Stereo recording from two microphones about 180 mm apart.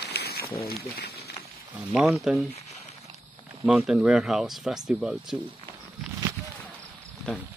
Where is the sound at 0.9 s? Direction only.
65° left (ahead or behind).